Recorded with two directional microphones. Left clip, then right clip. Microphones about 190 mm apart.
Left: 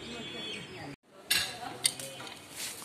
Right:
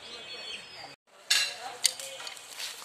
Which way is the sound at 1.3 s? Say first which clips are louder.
Right 4 dB; 45° right (ahead or behind).